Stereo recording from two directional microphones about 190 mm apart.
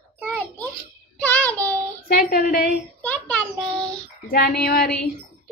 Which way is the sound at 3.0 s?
5° left (ahead or behind).